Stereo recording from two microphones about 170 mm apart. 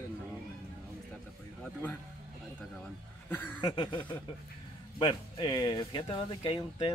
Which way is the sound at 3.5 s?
25° left (ahead or behind).